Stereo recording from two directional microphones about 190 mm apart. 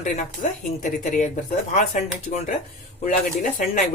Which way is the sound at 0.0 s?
40° left (ahead or behind).